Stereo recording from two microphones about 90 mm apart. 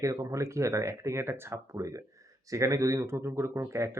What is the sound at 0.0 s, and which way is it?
Speech, 40° right (ahead or behind).